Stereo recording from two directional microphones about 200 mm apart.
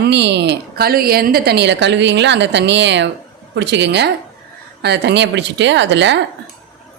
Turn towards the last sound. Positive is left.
turn(degrees=-60)  # may be behind; listen again after turning